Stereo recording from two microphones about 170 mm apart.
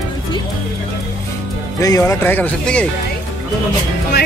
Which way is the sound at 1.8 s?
20° left (ahead or behind).